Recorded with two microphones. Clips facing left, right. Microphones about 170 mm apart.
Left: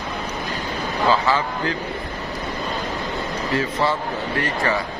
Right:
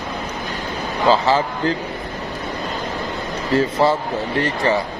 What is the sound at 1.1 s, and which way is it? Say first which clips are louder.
Speech: right 4 dB; 30° right (ahead or behind).